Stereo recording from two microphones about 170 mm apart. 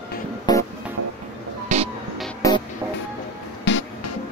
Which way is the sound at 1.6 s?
40° right (ahead or behind).